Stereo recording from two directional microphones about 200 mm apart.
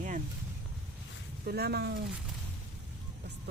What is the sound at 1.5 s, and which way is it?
Speech, 55° right (ahead or behind).